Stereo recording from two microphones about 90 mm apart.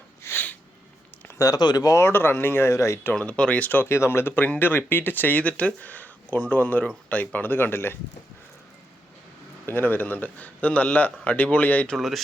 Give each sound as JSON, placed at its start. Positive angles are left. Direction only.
{"t": 0.2, "sound": "a sound", "side_deg": 25}
{"t": 1.4, "sound": "speech", "side_deg": 45}
{"t": 2.0, "sound": "a man's voice", "side_deg": 25}
{"t": 3.2, "sound": "speech", "side_deg": 10}
{"t": 3.8, "sound": "a man's voice", "side_deg": 30}
{"t": 9.6, "sound": "a man's voice", "side_deg": 20}
{"t": 11.9, "sound": "speech", "side_deg": 0}